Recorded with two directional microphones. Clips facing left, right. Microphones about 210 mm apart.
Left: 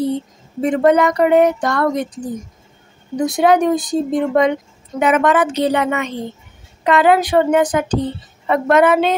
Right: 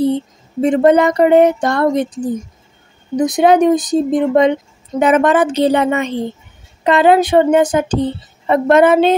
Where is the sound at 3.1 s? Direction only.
20° right (ahead or behind).